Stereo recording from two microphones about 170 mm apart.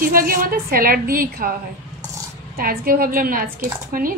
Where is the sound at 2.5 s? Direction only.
60° right (ahead or behind).